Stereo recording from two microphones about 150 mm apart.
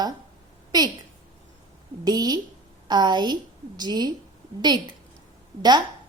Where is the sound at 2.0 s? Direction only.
25° right (ahead or behind).